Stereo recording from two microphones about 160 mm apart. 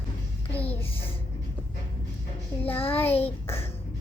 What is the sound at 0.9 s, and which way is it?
Speech, 35° left (ahead or behind).